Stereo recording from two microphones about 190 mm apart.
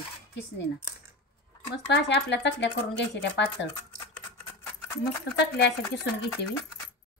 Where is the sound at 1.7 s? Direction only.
65° left (ahead or behind).